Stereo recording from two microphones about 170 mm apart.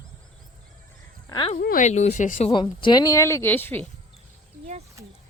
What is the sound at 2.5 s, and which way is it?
Speech, 30° left (ahead or behind).